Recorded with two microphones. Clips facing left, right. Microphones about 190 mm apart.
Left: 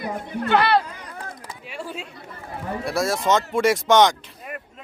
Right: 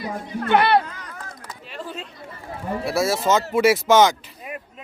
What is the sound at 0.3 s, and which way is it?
Speech, 60° left (ahead or behind).